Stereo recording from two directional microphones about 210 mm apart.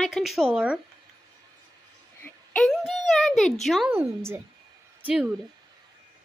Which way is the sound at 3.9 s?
10° right (ahead or behind).